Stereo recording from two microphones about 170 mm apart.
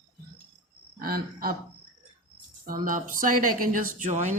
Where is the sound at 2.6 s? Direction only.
55° right (ahead or behind).